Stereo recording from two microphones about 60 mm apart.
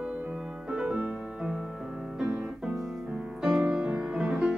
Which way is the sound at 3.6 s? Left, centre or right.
Centre.